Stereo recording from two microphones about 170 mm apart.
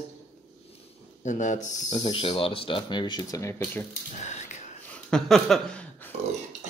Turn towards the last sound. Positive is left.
turn(degrees=5)  # may be behind; listen again after turning